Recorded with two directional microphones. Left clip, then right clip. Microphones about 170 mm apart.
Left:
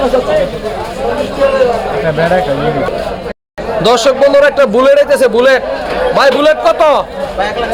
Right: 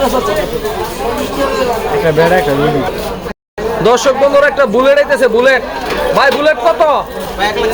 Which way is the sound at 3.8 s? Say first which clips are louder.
Left 1 dB; 30° left (ahead or behind).